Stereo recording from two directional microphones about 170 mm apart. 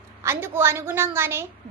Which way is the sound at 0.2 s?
15° right (ahead or behind).